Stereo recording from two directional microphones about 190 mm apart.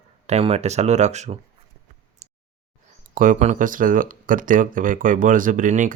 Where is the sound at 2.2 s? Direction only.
35° right (ahead or behind).